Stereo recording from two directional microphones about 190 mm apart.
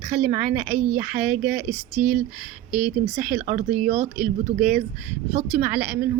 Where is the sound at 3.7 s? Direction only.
35° right (ahead or behind).